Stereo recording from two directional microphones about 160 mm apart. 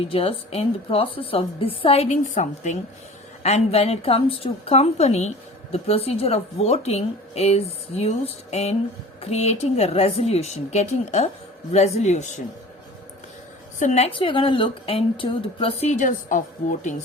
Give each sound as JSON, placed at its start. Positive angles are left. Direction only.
{"t": 0.0, "sound": "speech", "side_deg": 35}
{"t": 13.7, "sound": "speech", "side_deg": 45}